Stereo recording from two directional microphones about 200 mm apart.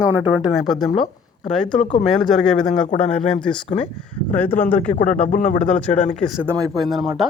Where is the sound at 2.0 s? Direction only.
Centre (ahead or behind).